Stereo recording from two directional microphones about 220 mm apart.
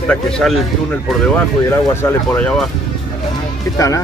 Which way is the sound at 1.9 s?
10° left (ahead or behind).